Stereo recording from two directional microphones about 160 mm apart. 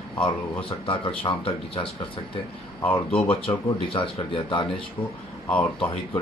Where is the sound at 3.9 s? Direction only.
30° left (ahead or behind).